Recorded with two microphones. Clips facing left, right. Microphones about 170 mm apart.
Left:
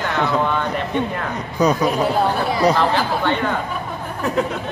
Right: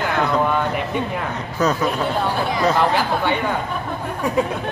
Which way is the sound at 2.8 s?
10° right (ahead or behind).